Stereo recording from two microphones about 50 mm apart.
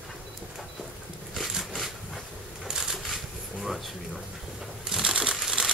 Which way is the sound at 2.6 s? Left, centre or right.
Centre.